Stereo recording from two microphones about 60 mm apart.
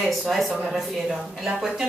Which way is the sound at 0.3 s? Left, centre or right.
Centre.